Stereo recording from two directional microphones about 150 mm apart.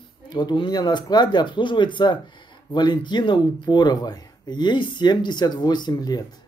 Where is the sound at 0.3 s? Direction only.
30° left (ahead or behind).